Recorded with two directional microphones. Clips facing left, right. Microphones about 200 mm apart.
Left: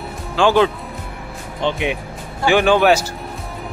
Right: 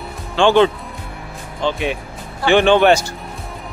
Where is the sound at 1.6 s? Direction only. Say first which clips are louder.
Even; 20° left (ahead or behind).